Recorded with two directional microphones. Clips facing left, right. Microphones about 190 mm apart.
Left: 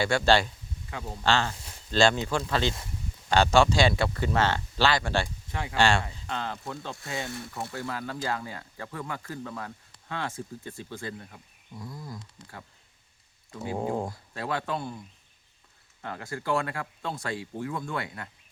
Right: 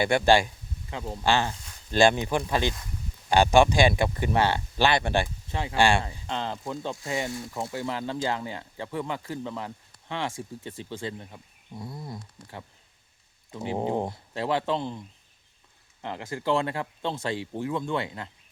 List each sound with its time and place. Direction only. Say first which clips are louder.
0.0 s speech: right 2 dB; 15° right (ahead or behind)
6.2 s speech: right 2 dB; 25° right (ahead or behind)
16.0 s speech: right 3 dB; 20° right (ahead or behind)